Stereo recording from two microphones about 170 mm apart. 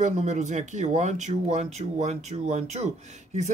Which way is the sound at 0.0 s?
45° right (ahead or behind).